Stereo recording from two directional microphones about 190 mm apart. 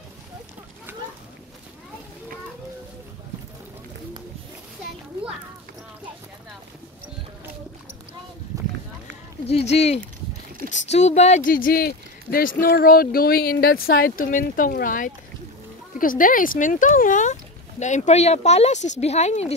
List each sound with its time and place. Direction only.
9.5 s speech: 35° left (ahead or behind)